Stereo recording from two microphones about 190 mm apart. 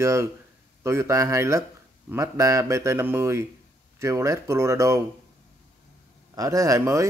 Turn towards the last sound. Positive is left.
turn(degrees=-15)  # may be behind; listen again after turning